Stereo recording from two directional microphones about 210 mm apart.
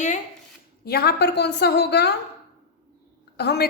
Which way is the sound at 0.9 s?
50° left (ahead or behind).